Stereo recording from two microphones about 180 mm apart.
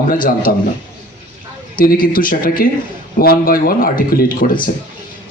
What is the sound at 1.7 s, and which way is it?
A man's voice, 50° left (ahead or behind).